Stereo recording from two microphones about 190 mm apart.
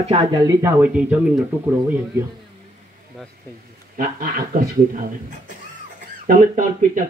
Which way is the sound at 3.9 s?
45° right (ahead or behind).